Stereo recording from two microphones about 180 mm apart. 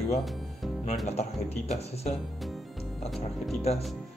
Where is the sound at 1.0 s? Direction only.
35° left (ahead or behind).